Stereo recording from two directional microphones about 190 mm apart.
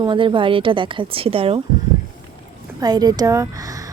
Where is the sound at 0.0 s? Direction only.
25° right (ahead or behind).